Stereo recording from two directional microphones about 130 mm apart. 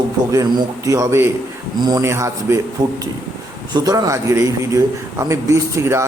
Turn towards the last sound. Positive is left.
turn(degrees=-20)  # may be behind; listen again after turning